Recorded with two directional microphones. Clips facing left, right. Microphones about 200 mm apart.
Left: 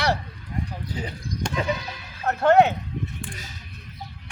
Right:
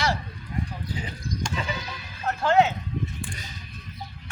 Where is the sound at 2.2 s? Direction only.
60° left (ahead or behind).